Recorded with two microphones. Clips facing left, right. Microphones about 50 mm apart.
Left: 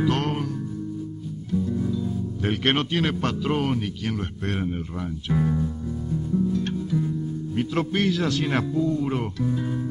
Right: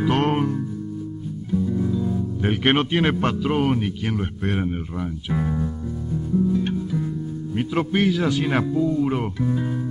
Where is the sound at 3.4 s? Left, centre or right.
Centre.